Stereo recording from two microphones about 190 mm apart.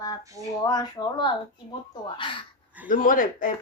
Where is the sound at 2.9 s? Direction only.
45° left (ahead or behind).